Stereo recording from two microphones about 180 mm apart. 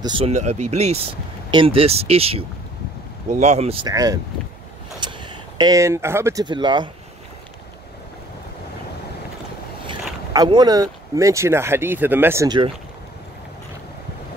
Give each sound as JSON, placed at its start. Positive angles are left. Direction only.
{"t": 0.0, "sound": "speech", "side_deg": -30}
{"t": 3.8, "sound": "speech", "side_deg": -20}
{"t": 9.8, "sound": "speech", "side_deg": -25}